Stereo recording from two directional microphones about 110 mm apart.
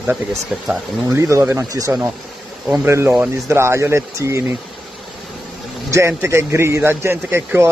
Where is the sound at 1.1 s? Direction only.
25° right (ahead or behind).